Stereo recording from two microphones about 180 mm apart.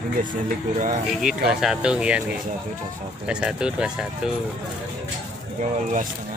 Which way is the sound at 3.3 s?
5° right (ahead or behind).